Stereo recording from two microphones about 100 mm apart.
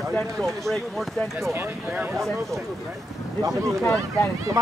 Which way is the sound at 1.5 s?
20° right (ahead or behind).